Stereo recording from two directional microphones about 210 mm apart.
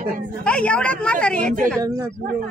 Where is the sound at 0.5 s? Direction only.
5° left (ahead or behind).